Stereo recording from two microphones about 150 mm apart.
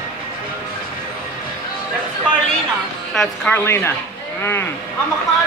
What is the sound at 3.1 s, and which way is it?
Speech, 5° left (ahead or behind).